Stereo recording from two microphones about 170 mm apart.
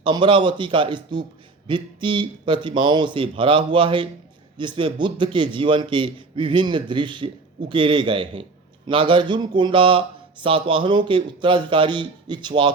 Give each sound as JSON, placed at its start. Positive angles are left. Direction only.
{"t": 0.0, "sound": "a man's voice", "side_deg": -30}